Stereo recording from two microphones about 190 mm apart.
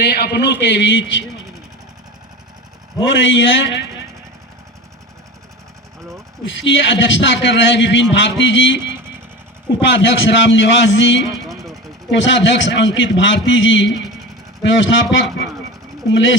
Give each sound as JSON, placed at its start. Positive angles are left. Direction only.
{"t": 0.0, "sound": "a man's voice", "side_deg": 60}
{"t": 3.0, "sound": "a man's voice", "side_deg": 75}
{"t": 6.4, "sound": "a man's voice", "side_deg": 70}
{"t": 9.8, "sound": "a man's voice", "side_deg": 70}